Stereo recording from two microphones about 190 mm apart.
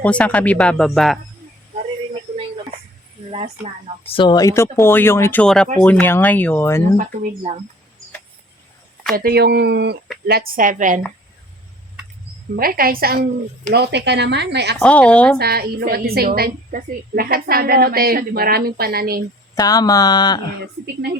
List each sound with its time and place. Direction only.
0.0 s speech: 5° left (ahead or behind)
4.0 s speech: 25° left (ahead or behind); by 6.8 s 10° left (ahead or behind)
6.9 s speech: 40° right (ahead or behind)
9.1 s speech: 55° right (ahead or behind)
10.2 s a woman's voice: 50° right (ahead or behind)
12.5 s a woman's voice: 50° right (ahead or behind)
14.8 s speech: 5° left (ahead or behind)
15.4 s a woman's voice: 55° right (ahead or behind)
19.5 s speech: 20° left (ahead or behind)